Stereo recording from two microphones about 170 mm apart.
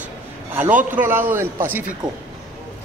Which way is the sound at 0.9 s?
10° right (ahead or behind).